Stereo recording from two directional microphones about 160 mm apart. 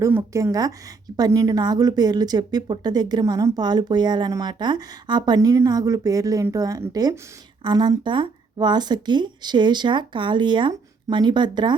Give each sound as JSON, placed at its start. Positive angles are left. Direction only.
{"t": 0.0, "sound": "a woman's voice", "side_deg": -15}